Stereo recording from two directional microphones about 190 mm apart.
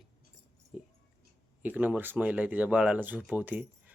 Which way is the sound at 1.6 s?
10° right (ahead or behind).